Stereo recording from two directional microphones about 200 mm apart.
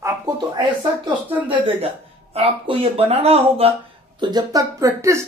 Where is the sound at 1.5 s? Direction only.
30° right (ahead or behind).